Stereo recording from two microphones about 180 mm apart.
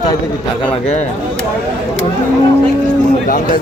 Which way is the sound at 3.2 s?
50° left (ahead or behind).